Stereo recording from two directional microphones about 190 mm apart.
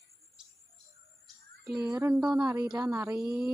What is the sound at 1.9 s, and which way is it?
Speech, 10° right (ahead or behind).